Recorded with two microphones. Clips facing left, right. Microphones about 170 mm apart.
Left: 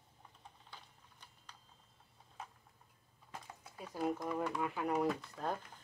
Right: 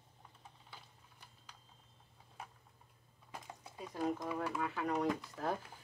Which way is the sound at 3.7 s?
10° left (ahead or behind).